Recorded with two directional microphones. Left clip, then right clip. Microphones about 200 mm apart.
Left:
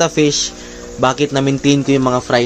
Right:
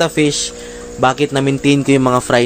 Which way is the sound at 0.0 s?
5° right (ahead or behind).